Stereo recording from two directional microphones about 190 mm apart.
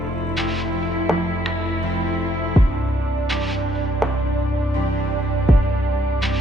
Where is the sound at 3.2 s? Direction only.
Centre (ahead or behind).